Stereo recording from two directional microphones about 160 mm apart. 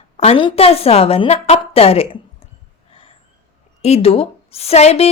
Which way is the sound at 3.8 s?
40° left (ahead or behind).